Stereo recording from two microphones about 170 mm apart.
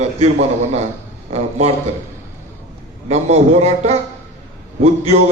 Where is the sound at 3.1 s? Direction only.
40° right (ahead or behind).